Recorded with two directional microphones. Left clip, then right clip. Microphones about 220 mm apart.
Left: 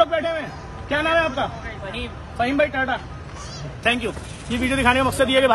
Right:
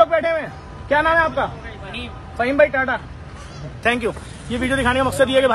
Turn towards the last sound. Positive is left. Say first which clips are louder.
# right 2 dB
turn(degrees=5)  # may be behind; listen again after turning